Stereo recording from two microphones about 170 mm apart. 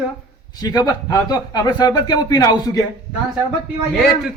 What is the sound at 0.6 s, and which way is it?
A man's voice, 20° left (ahead or behind).